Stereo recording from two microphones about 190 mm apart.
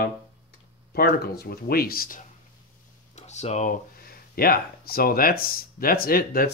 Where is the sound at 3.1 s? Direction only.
35° left (ahead or behind).